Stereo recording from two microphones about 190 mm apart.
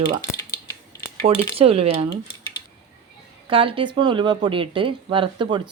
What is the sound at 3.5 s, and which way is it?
Speech, 30° right (ahead or behind).